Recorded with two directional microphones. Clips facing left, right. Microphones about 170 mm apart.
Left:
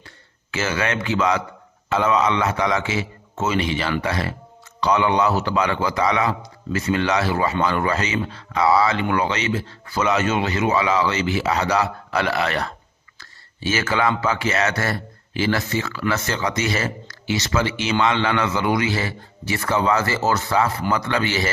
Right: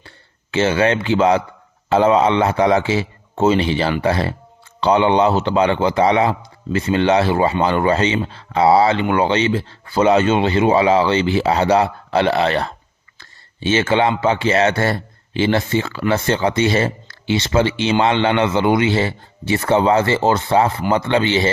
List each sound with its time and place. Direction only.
0.5 s a man's voice: 30° right (ahead or behind)